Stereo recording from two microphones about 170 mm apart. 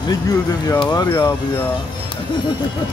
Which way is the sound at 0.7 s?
25° left (ahead or behind).